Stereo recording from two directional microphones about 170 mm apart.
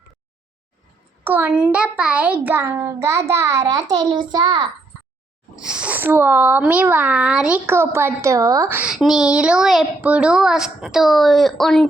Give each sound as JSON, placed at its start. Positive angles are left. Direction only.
{"t": 1.2, "sound": "a child's voice", "side_deg": -10}
{"t": 5.5, "sound": "a child's voice", "side_deg": -5}
{"t": 8.8, "sound": "a woman's voice", "side_deg": -5}